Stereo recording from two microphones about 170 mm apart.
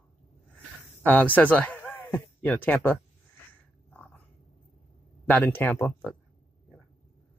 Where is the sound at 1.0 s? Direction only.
10° left (ahead or behind).